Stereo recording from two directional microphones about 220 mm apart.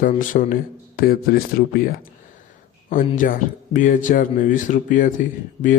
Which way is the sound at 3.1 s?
35° left (ahead or behind).